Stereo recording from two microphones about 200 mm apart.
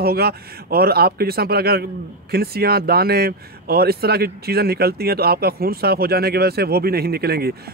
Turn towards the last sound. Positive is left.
turn(degrees=-50)  # may be behind; listen again after turning